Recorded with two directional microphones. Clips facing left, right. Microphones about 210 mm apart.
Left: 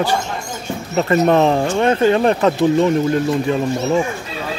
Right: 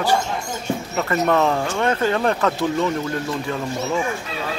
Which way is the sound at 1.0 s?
25° left (ahead or behind).